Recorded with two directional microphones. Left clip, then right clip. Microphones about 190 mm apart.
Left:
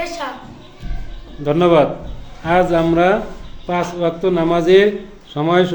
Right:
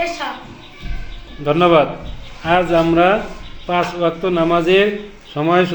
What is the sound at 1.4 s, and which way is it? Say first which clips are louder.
Speech: even; 15° left (ahead or behind).